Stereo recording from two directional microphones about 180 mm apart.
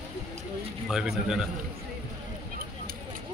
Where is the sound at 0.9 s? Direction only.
5° right (ahead or behind).